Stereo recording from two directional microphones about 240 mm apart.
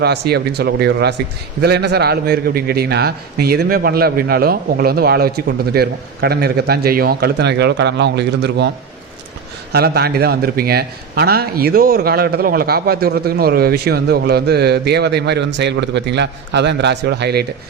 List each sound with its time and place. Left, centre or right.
0.0 s a man's voice: right
9.7 s a man's voice: right